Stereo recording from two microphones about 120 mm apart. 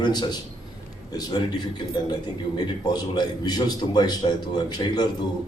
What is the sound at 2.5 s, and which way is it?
A man's voice, 35° left (ahead or behind).